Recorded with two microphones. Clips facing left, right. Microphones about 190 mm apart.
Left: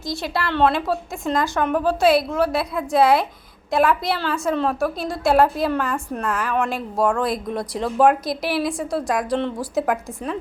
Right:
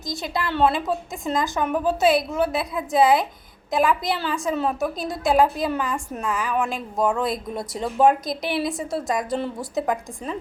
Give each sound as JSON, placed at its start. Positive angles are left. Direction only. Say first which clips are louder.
{"t": 0.2, "sound": "a woman's voice", "louder": "left 1 dB", "side_deg": 0}